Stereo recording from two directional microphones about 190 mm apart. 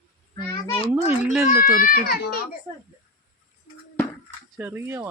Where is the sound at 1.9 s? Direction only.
55° left (ahead or behind).